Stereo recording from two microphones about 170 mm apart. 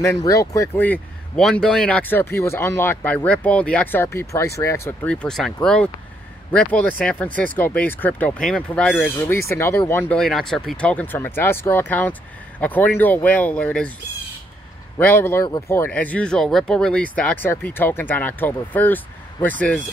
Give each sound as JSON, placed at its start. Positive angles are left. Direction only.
{"t": 0.0, "sound": "speech", "side_deg": 20}
{"t": 15.0, "sound": "speech", "side_deg": 10}